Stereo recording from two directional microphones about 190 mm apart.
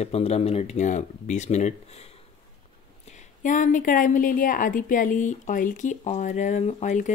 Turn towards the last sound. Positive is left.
turn(degrees=40)  # may be behind; listen again after turning